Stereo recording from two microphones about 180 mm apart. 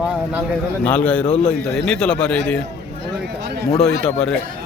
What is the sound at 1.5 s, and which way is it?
A man's voice, 5° left (ahead or behind).